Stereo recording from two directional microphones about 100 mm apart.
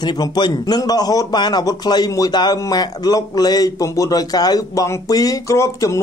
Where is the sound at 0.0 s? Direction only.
45° left (ahead or behind).